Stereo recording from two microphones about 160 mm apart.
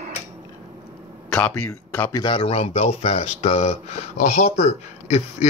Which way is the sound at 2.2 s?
35° left (ahead or behind).